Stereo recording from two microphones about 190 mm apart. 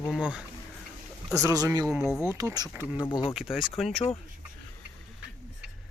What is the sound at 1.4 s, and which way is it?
Speech, 20° right (ahead or behind).